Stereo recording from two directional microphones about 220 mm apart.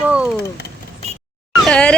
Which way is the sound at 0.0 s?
5° right (ahead or behind).